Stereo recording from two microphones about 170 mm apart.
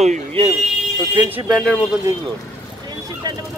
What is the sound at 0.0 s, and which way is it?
Speech, 35° right (ahead or behind).